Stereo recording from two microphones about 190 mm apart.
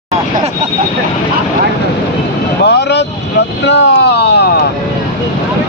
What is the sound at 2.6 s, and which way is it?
Vehicle, 65° left (ahead or behind).